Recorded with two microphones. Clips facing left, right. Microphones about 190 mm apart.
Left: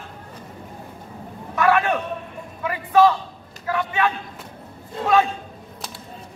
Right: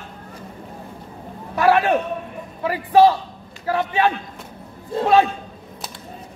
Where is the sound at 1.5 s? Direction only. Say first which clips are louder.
Right 3 dB; 30° right (ahead or behind).